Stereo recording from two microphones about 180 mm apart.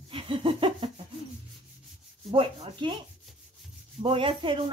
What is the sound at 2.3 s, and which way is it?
Laughter, 30° right (ahead or behind).